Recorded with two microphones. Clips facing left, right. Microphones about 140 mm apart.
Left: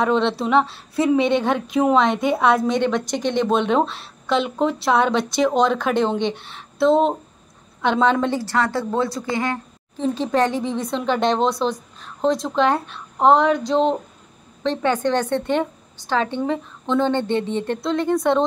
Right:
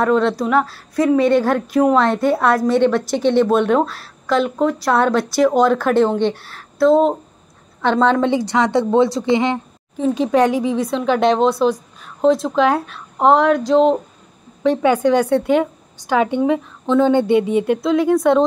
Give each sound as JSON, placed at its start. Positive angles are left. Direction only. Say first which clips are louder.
{"t": 0.0, "sound": "a woman's voice", "louder": "right 3 dB", "side_deg": 25}
{"t": 7.8, "sound": "a woman's voice", "louder": "right 3 dB", "side_deg": 10}
{"t": 8.5, "sound": "speech", "louder": "right 5 dB", "side_deg": -20}
{"t": 9.9, "sound": "a woman's voice", "louder": "right 4 dB", "side_deg": -10}